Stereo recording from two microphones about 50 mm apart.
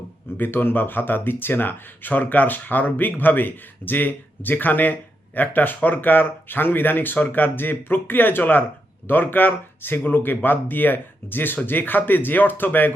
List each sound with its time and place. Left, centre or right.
0.3 s speech: left